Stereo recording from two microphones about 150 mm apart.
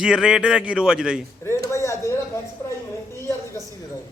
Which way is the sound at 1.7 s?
20° left (ahead or behind).